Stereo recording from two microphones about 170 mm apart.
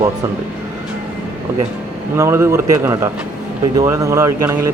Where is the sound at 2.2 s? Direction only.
15° right (ahead or behind).